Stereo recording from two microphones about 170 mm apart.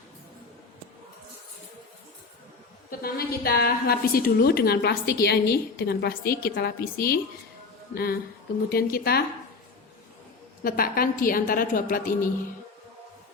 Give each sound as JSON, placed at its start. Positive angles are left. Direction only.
{"t": 3.0, "sound": "a woman's voice", "side_deg": 65}
{"t": 10.6, "sound": "a woman's voice", "side_deg": 60}